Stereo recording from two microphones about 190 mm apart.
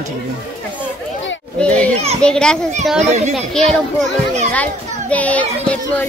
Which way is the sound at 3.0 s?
35° right (ahead or behind).